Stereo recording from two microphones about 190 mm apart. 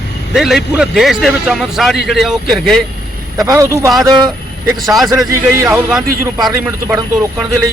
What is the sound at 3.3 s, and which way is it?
Speech, 15° right (ahead or behind).